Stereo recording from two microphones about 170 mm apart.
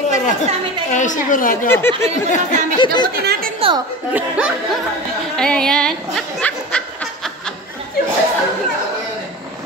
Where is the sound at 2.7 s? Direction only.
25° left (ahead or behind).